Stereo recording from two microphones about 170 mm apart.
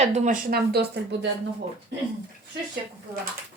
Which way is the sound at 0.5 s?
70° right (ahead or behind).